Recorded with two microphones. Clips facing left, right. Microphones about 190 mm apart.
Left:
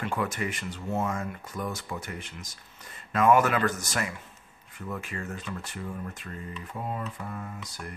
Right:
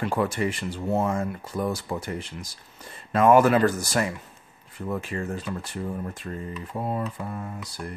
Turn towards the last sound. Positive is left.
turn(degrees=-30)  # may be behind; listen again after turning